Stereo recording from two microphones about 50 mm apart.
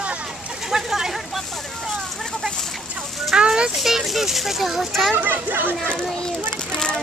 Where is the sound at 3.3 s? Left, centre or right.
Centre.